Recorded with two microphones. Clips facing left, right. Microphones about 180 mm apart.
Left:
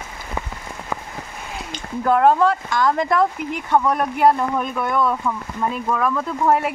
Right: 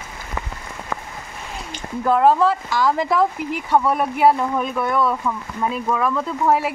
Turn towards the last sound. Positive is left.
turn(degrees=0)  # may be behind; listen again after turning